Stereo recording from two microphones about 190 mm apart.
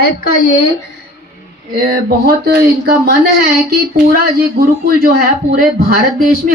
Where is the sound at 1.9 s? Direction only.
55° right (ahead or behind).